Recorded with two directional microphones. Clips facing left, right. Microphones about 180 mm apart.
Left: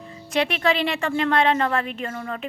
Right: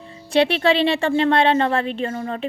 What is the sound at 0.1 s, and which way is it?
A woman's voice, 30° right (ahead or behind).